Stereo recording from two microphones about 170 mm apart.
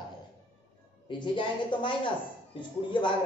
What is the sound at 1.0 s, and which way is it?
A woman's voice, 30° left (ahead or behind).